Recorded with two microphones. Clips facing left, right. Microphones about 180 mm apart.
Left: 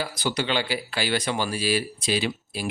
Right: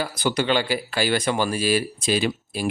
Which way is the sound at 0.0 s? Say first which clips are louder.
Right 4 dB; 55° right (ahead or behind).